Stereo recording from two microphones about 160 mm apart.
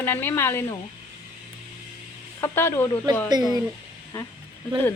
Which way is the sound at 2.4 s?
15° left (ahead or behind).